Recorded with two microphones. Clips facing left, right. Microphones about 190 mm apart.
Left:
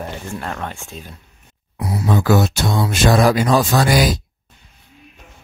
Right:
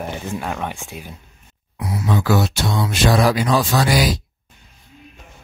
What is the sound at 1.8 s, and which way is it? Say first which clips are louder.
Speech: left 2 dB; 35° left (ahead or behind).